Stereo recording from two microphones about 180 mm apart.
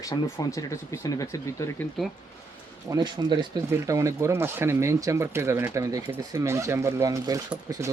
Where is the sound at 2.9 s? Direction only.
25° right (ahead or behind).